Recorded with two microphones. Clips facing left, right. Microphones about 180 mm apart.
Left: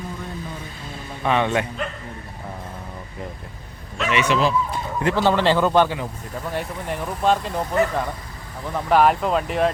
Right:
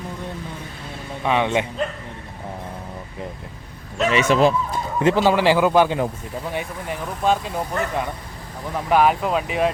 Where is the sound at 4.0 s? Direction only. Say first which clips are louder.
Right 3 dB; 40° right (ahead or behind).